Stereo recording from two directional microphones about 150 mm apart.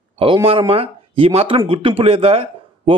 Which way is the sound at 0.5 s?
40° right (ahead or behind).